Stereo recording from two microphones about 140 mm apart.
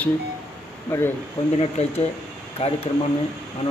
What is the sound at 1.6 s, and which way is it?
A man's voice, 45° left (ahead or behind).